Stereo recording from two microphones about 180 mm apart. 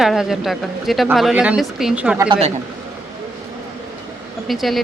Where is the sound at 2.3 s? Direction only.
35° right (ahead or behind).